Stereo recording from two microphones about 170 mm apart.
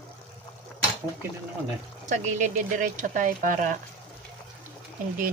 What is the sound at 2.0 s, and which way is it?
Speech, 45° right (ahead or behind).